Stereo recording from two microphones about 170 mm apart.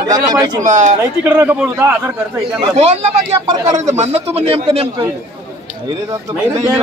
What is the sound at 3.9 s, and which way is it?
A man's voice, 40° right (ahead or behind).